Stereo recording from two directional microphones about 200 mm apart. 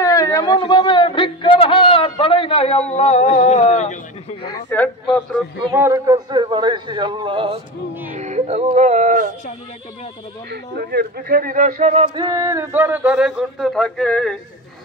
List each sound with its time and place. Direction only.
0.0 s a sound: 15° left (ahead or behind); by 4.5 s 35° left (ahead or behind)
4.6 s speech: 5° left (ahead or behind)
5.8 s speech: 15° right (ahead or behind)
8.1 s speech: 35° right (ahead or behind)
10.5 s speech: 50° right (ahead or behind); by 12.3 s 30° right (ahead or behind)
12.3 s speech: 15° right (ahead or behind); by 14.3 s 5° left (ahead or behind)